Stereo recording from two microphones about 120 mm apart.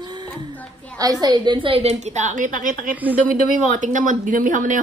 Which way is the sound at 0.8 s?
10° left (ahead or behind).